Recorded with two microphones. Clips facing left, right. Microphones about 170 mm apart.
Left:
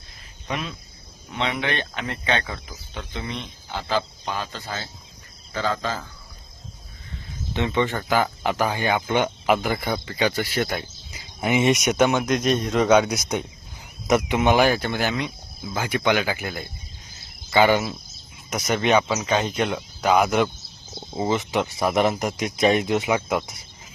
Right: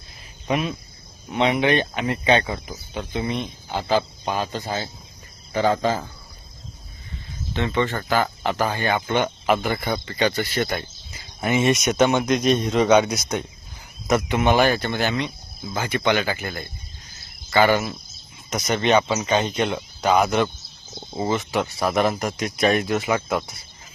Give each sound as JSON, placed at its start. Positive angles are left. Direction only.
{"t": 0.4, "sound": "speech", "side_deg": -15}
{"t": 7.5, "sound": "speech", "side_deg": 15}
{"t": 11.1, "sound": "speech", "side_deg": 15}
{"t": 13.1, "sound": "speech", "side_deg": 15}
{"t": 20.9, "sound": "a sound", "side_deg": 5}
{"t": 21.2, "sound": "speech", "side_deg": 20}